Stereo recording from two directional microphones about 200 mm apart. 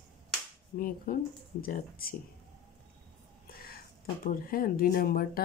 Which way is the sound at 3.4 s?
50° left (ahead or behind).